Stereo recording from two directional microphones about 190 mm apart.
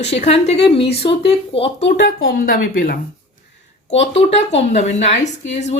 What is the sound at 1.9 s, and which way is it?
Speech, 45° left (ahead or behind).